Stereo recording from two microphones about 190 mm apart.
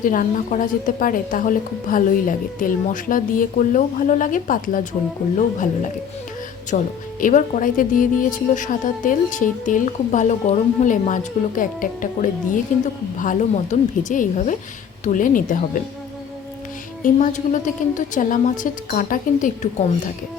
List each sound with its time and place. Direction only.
0.0 s speech: 45° left (ahead or behind)
6.7 s speech: 40° left (ahead or behind)
17.0 s speech: 40° left (ahead or behind)